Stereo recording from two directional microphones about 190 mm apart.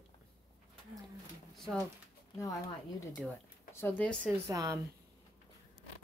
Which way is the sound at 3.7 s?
15° left (ahead or behind).